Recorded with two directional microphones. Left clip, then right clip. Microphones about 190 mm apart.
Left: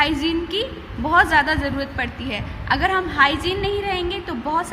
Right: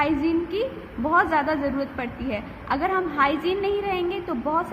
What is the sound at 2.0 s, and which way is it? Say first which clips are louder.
A woman's voice: left 3 dB; 10° left (ahead or behind).